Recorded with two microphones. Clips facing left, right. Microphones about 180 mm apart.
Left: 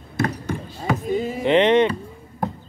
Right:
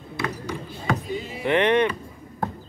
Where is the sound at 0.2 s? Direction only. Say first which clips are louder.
Left 6 dB; 45° left (ahead or behind).